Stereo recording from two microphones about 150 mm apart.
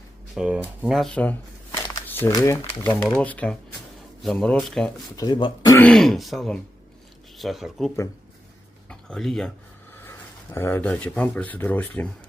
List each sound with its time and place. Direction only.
0.3 s speech: 10° right (ahead or behind)
0.8 s shuffling cards: centre (ahead or behind); by 2.3 s 15° left (ahead or behind)
2.3 s speech: 20° left (ahead or behind); by 4.9 s 5° left (ahead or behind)
5.1 s speech: 30° left (ahead or behind)
5.8 s speech: 5° left (ahead or behind)
10.0 s speech: 15° left (ahead or behind)